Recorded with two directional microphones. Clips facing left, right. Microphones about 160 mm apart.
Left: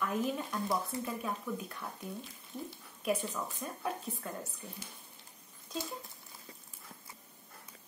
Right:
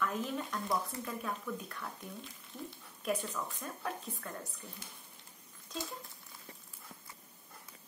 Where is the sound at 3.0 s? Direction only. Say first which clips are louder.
Left 2 dB; 15° left (ahead or behind).